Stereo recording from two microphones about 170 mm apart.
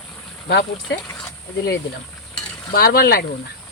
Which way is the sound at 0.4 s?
90° left.